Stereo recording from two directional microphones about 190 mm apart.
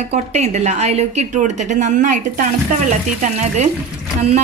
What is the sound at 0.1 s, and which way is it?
A woman's voice, 35° right (ahead or behind).